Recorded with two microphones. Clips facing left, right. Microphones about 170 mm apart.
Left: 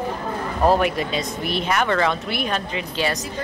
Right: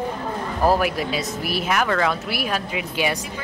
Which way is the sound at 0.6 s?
Centre (ahead or behind).